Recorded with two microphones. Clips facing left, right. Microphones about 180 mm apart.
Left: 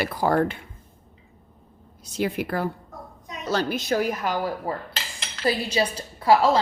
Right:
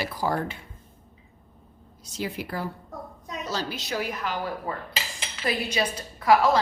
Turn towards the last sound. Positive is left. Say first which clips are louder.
# left 1 dB
turn(degrees=30)  # may be behind; listen again after turning